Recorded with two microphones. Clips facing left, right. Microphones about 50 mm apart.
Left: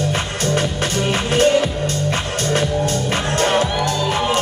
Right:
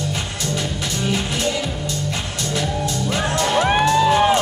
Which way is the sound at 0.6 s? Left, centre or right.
Left.